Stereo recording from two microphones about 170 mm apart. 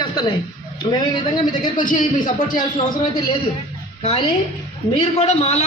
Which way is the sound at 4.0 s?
35° left (ahead or behind).